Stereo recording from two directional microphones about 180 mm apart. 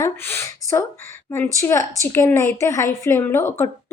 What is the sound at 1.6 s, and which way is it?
A woman's voice, 15° left (ahead or behind).